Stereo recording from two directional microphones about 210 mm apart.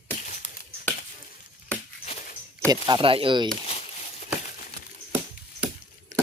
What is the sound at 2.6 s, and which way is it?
Speech, 20° right (ahead or behind).